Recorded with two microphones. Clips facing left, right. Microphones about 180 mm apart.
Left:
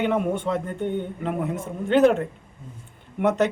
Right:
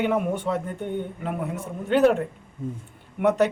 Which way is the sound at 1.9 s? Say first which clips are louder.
Left 1 dB; 5° right (ahead or behind).